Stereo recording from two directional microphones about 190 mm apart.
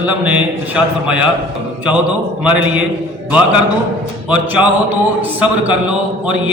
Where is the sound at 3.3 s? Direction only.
5° right (ahead or behind).